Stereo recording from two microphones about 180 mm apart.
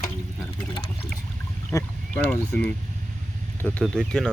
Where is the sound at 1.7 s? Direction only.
10° left (ahead or behind).